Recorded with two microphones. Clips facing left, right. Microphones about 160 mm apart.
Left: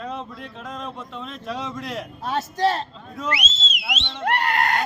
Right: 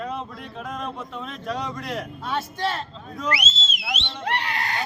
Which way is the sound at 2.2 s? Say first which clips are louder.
Left 6 dB; 40° left (ahead or behind).